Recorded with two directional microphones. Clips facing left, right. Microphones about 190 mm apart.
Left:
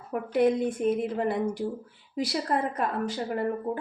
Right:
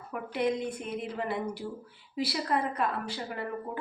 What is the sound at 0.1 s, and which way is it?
Speech, 45° left (ahead or behind).